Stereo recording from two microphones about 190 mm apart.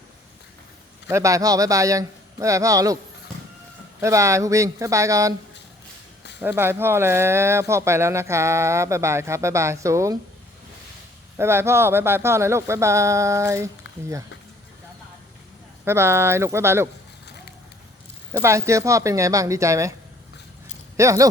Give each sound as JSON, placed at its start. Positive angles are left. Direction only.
{"t": 1.0, "sound": "speech", "side_deg": -15}
{"t": 4.0, "sound": "speech", "side_deg": -15}
{"t": 6.4, "sound": "speech", "side_deg": -10}
{"t": 11.3, "sound": "speech", "side_deg": -15}
{"t": 15.8, "sound": "speech", "side_deg": -15}
{"t": 18.3, "sound": "speech", "side_deg": -10}
{"t": 20.9, "sound": "speech", "side_deg": -15}